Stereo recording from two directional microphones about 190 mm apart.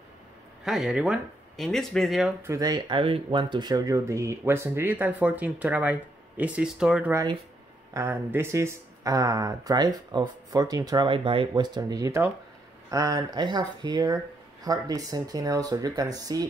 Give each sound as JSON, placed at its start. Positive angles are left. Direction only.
{"t": 0.7, "sound": "speech", "side_deg": -5}
{"t": 2.4, "sound": "speech", "side_deg": -20}